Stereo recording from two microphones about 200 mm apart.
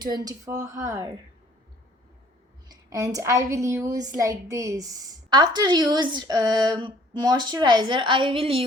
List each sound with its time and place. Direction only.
0.0 s speech: 20° right (ahead or behind)
2.6 s a woman's voice: 15° right (ahead or behind)